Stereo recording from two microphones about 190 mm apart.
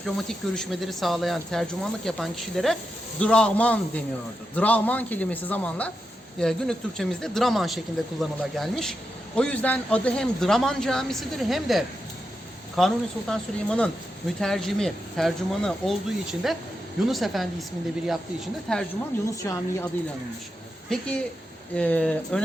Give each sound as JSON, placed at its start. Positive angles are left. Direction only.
{"t": 0.0, "sound": "a man's voice", "side_deg": 5}
{"t": 19.4, "sound": "a man's voice", "side_deg": 15}
{"t": 21.8, "sound": "a man's voice", "side_deg": 5}